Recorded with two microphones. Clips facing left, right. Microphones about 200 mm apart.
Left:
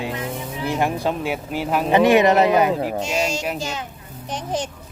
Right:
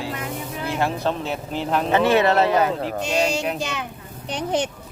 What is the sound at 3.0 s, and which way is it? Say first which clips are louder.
Speech: right 1 dB; 60° right (ahead or behind).